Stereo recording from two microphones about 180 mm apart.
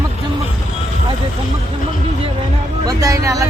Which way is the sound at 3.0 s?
15° right (ahead or behind).